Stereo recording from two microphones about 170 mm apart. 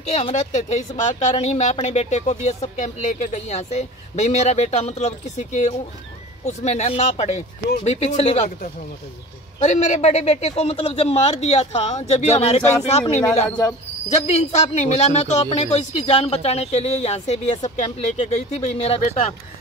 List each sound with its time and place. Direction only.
0.0 s speech: 40° left (ahead or behind)
9.6 s speech: 45° left (ahead or behind)